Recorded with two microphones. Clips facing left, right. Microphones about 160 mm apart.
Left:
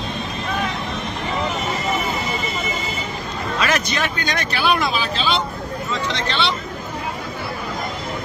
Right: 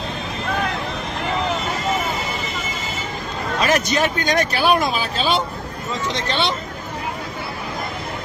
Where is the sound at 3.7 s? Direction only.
45° right (ahead or behind).